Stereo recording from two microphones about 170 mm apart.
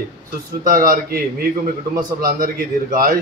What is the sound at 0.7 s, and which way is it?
A man's voice, 55° right (ahead or behind).